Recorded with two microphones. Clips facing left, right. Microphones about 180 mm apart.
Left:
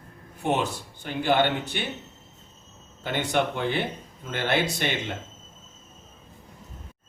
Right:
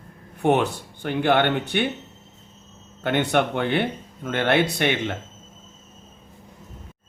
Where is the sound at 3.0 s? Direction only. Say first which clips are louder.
Right 4 dB; 60° right (ahead or behind).